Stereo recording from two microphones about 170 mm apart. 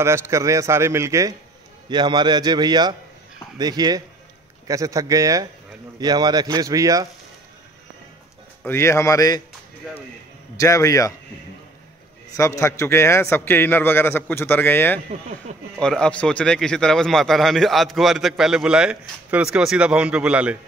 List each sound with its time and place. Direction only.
0.0 s a man's voice: 15° right (ahead or behind)
8.6 s speech: 15° left (ahead or behind)
10.6 s speech: 20° left (ahead or behind)
12.4 s a man's voice: 20° left (ahead or behind); by 20.5 s 5° right (ahead or behind)